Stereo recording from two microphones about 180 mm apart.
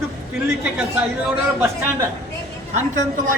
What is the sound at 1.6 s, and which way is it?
Speech, 10° right (ahead or behind).